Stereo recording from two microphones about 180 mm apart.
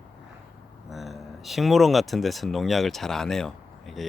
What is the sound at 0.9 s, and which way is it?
Speech, centre (ahead or behind).